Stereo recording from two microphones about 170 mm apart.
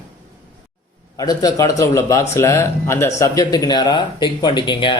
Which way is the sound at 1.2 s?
20° left (ahead or behind).